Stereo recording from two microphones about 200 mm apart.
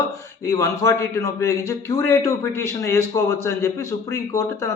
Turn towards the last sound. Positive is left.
turn(degrees=15)  # may be behind; listen again after turning